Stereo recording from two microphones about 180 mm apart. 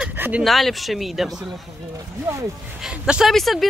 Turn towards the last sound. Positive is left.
turn(degrees=0)  # may be behind; listen again after turning